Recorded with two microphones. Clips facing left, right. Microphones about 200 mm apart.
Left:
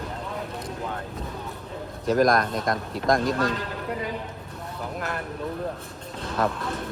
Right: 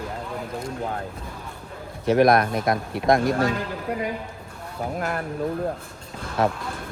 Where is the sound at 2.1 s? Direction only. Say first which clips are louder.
Right 3 dB; 60° right (ahead or behind).